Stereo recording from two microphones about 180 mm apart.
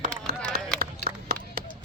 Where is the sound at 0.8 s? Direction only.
55° right (ahead or behind).